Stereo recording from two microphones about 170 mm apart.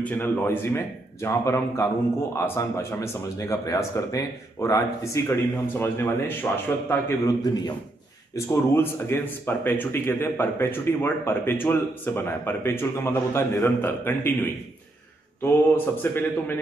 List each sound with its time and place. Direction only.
0.0 s a man's voice: 10° left (ahead or behind)